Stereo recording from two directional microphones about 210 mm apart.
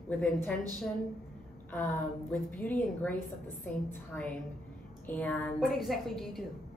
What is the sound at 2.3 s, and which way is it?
A woman's voice, 5° left (ahead or behind).